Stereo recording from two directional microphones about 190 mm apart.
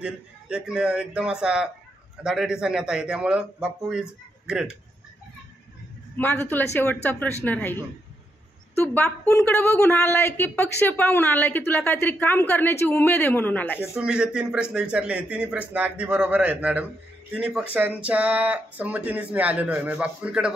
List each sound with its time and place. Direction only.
0.0 s a man's voice: 5° right (ahead or behind)
6.1 s a woman's voice: 10° left (ahead or behind)
13.7 s a man's voice: 5° right (ahead or behind)